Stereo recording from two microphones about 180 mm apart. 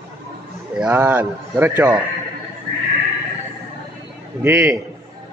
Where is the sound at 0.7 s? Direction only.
10° right (ahead or behind).